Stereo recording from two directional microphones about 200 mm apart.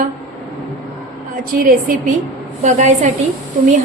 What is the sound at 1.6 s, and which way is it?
A woman's voice, 40° right (ahead or behind).